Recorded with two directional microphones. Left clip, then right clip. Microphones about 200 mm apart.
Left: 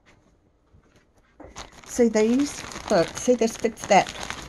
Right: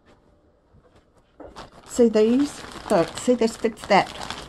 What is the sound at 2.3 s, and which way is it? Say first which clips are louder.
Speech: right 2 dB; 40° left (ahead or behind).